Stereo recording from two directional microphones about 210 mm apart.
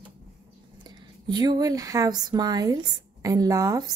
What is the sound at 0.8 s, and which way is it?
A woman's voice, 20° right (ahead or behind).